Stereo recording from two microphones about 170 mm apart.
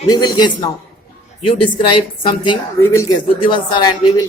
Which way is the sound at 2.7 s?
15° left (ahead or behind).